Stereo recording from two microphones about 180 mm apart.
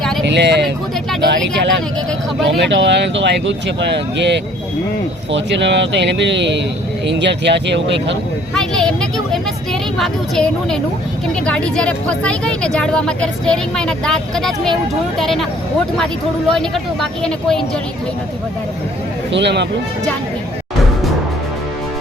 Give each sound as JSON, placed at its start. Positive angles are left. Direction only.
{"t": 0.3, "sound": "speech", "side_deg": -70}
{"t": 8.5, "sound": "a sound", "side_deg": 5}
{"t": 10.0, "sound": "speech", "side_deg": 5}
{"t": 16.5, "sound": "speech", "side_deg": 0}
{"t": 19.3, "sound": "speech", "side_deg": -70}